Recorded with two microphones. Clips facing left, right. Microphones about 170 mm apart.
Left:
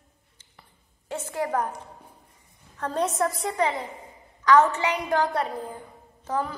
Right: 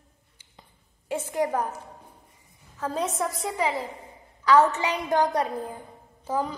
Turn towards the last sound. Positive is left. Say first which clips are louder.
# right 1 dB
turn(degrees=-10)  # may be behind; listen again after turning